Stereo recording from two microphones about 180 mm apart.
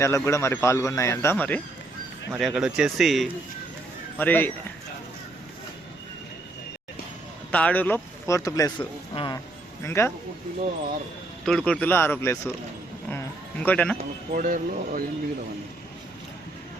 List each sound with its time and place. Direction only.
0.0 s speech: 15° left (ahead or behind)
2.4 s speech: 5° right (ahead or behind)
4.2 s speech: 10° left (ahead or behind)
7.5 s speech: 10° left (ahead or behind); by 9.4 s 25° left (ahead or behind)
9.8 s speech: 15° left (ahead or behind)
11.4 s speech: 5° left (ahead or behind)
13.1 s a sound: 10° left (ahead or behind)
14.0 s speech: 45° right (ahead or behind)